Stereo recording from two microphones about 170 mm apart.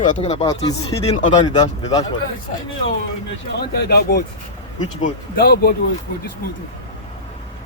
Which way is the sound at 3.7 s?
70° left (ahead or behind).